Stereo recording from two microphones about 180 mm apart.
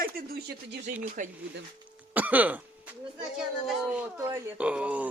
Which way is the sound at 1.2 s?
45° right (ahead or behind).